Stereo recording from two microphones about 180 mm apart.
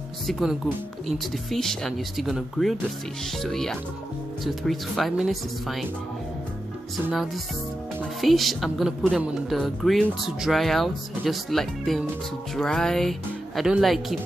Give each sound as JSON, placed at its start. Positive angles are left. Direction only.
{"t": 0.3, "sound": "speech", "side_deg": 0}
{"t": 8.0, "sound": "speech", "side_deg": 0}